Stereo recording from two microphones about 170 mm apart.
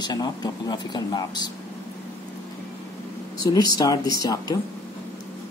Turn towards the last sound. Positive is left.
turn(degrees=20)  # may be behind; listen again after turning